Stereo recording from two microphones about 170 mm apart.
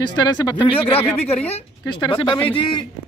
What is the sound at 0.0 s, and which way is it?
Speech, 25° left (ahead or behind).